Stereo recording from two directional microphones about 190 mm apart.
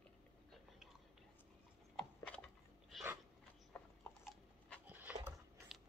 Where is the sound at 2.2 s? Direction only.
5° left (ahead or behind).